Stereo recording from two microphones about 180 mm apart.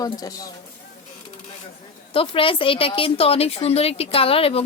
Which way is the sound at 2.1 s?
30° left (ahead or behind).